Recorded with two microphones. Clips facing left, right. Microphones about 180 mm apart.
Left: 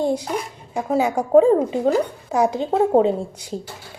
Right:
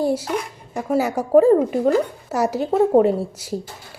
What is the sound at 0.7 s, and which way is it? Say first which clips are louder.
A woman's voice: even; 15° left (ahead or behind).